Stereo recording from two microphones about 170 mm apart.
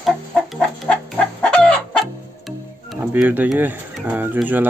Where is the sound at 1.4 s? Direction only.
5° left (ahead or behind).